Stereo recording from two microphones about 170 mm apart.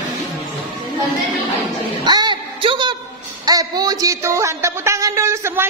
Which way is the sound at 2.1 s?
25° right (ahead or behind).